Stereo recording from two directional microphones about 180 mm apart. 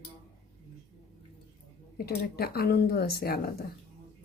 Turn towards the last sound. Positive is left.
turn(degrees=60)  # may be behind; listen again after turning